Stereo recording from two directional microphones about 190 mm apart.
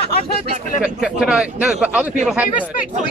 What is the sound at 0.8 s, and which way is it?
A man's voice, 5° right (ahead or behind).